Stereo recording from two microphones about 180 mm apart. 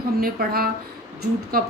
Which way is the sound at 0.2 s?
55° right (ahead or behind).